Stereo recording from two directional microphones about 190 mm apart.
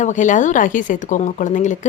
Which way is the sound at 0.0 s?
40° left (ahead or behind).